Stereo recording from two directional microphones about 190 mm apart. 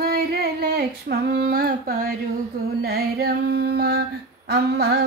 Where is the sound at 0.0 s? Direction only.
55° right (ahead or behind).